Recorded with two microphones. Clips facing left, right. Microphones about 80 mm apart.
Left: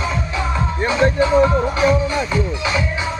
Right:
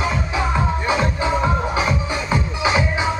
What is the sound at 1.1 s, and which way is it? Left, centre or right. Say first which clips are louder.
Music: left 6 dB; centre.